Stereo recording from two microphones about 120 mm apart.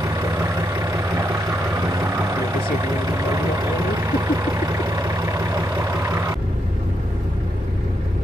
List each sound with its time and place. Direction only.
0.0 s vehicle: 25° right (ahead or behind)